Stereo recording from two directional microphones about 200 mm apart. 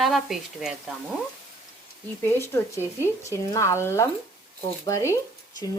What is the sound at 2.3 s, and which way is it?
A woman's voice, 10° left (ahead or behind).